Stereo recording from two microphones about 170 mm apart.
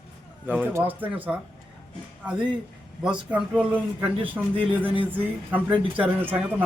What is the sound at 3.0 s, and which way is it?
Speech, 5° right (ahead or behind).